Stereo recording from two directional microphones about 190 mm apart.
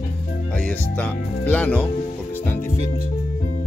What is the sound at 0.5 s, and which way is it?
Music, 5° left (ahead or behind).